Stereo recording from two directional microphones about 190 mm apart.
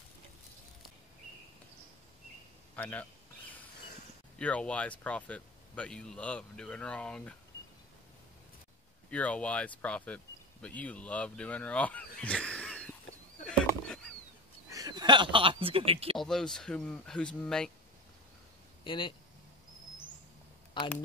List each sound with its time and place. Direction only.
2.7 s a man's voice: 10° left (ahead or behind)
4.4 s speech: 5° left (ahead or behind)
9.1 s speech: 5° left (ahead or behind)
13.5 s a sound: 5° left (ahead or behind)
14.7 s speech: 20° right (ahead or behind)
16.2 s speech: 5° left (ahead or behind)
18.9 s speech: 25° left (ahead or behind)